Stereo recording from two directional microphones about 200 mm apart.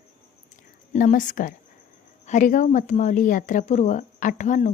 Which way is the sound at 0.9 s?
40° left (ahead or behind).